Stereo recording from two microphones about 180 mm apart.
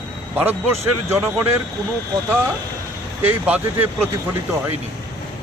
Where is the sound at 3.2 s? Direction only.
10° right (ahead or behind).